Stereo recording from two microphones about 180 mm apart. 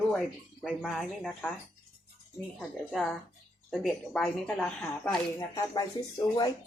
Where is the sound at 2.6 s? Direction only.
Centre (ahead or behind).